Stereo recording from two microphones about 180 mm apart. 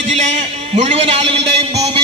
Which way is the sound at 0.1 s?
40° right (ahead or behind).